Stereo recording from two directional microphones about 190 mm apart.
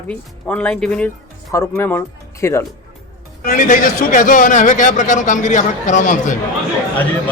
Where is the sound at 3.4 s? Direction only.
45° left (ahead or behind).